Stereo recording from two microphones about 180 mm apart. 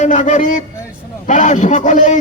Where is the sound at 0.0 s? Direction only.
45° left (ahead or behind).